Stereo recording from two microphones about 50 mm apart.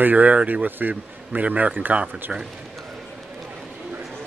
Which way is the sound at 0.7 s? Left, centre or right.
Right.